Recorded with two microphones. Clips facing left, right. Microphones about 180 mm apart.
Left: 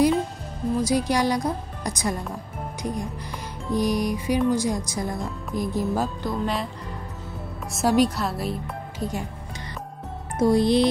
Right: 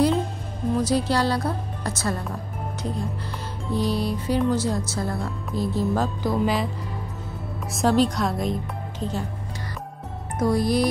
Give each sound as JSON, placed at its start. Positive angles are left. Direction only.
{"t": 0.7, "sound": "speech", "side_deg": 10}
{"t": 6.2, "sound": "speech", "side_deg": 0}
{"t": 7.8, "sound": "speech", "side_deg": 10}
{"t": 10.4, "sound": "music", "side_deg": 25}